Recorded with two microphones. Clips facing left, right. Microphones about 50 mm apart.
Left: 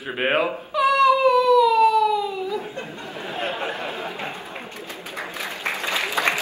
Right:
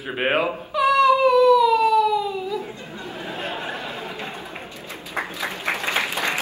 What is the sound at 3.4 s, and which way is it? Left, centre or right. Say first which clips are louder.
Chatter: left 4 dB; left.